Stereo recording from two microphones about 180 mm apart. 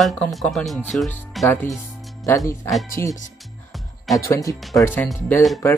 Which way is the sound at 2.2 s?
15° left (ahead or behind).